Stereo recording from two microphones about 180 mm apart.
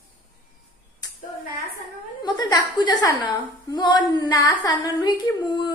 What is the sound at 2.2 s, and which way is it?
A woman's voice, 25° left (ahead or behind).